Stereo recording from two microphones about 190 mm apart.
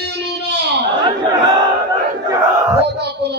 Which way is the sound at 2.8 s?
60° right (ahead or behind).